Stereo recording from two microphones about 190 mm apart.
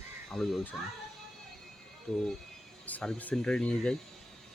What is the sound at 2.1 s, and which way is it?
Speech, centre (ahead or behind).